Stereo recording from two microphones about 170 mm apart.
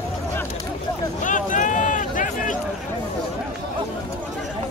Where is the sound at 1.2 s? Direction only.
50° left (ahead or behind).